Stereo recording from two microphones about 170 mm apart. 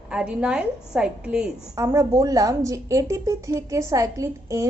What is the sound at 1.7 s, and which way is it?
A woman's voice, 15° right (ahead or behind).